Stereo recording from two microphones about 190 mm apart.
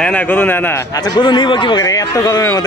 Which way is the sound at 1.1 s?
25° left (ahead or behind).